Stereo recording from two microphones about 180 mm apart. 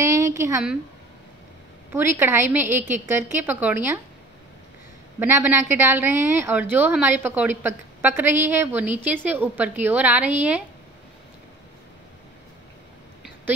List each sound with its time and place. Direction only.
0.0 s a sound: 15° right (ahead or behind)
1.9 s a woman's voice: 10° right (ahead or behind)
5.2 s a woman's voice: 10° right (ahead or behind)